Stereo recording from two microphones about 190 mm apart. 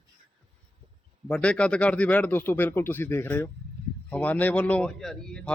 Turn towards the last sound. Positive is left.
turn(degrees=5)  # may be behind; listen again after turning